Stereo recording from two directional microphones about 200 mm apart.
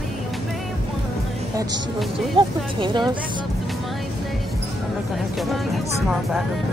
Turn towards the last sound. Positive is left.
turn(degrees=0)  # may be behind; listen again after turning